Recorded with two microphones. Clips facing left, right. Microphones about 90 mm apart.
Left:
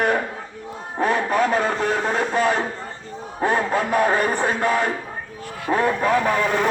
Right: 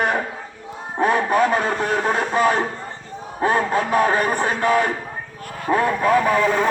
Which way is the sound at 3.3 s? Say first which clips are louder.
Right 1 dB; 10° right (ahead or behind).